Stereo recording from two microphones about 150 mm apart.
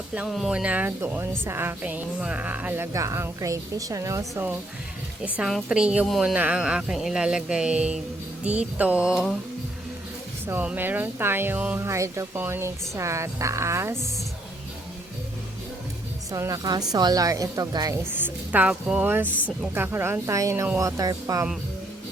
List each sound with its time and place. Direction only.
0.1 s speech: 5° right (ahead or behind)
5.2 s a woman's voice: 5° right (ahead or behind)
9.1 s a woman's voice: 5° left (ahead or behind)
10.4 s speech: 10° right (ahead or behind)
16.3 s a woman's voice: 25° right (ahead or behind)
18.1 s a woman's voice: 10° right (ahead or behind)